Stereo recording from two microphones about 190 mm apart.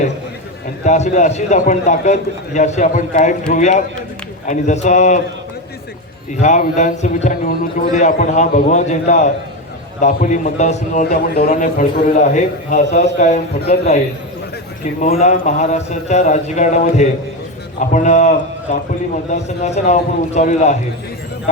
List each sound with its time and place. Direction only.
0.9 s a man's voice: 40° left (ahead or behind)
6.3 s a man's voice: 40° left (ahead or behind)
11.3 s a man's voice: 50° left (ahead or behind)
15.0 s a man's voice: 35° left (ahead or behind)